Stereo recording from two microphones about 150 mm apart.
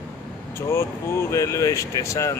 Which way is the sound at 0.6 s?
15° left (ahead or behind).